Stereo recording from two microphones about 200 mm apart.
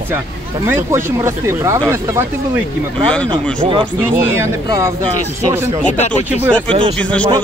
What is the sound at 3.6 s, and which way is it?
Speech, 25° right (ahead or behind).